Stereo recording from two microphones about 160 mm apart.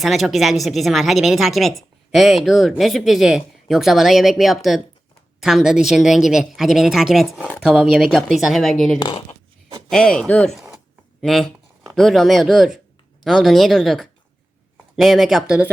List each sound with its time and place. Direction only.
0.0 s speech: centre (ahead or behind)
9.0 s speech: 30° left (ahead or behind)
9.9 s speech: 5° left (ahead or behind)